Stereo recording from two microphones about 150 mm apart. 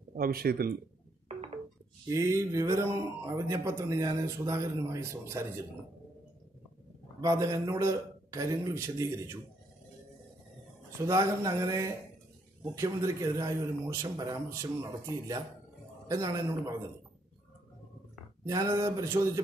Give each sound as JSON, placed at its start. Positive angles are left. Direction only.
{"t": 0.1, "sound": "speech", "side_deg": -80}
{"t": 2.0, "sound": "speech", "side_deg": -20}
{"t": 7.2, "sound": "speech", "side_deg": -20}
{"t": 11.1, "sound": "speech", "side_deg": -20}
{"t": 18.5, "sound": "speech", "side_deg": -20}